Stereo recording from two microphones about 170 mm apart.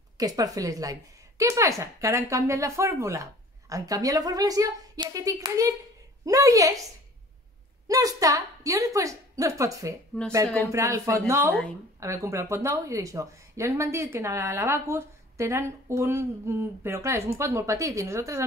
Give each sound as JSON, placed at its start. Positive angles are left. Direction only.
{"t": 0.2, "sound": "speech", "side_deg": -20}
{"t": 7.9, "sound": "speech", "side_deg": -20}